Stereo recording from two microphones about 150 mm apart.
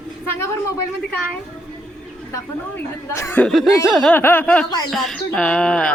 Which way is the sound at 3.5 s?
Centre (ahead or behind).